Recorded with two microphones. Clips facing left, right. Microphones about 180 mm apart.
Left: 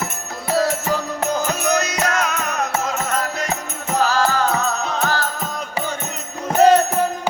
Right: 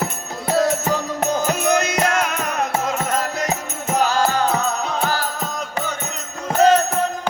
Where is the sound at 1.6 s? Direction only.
25° right (ahead or behind).